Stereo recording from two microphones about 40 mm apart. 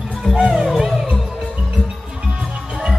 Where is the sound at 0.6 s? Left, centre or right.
Centre.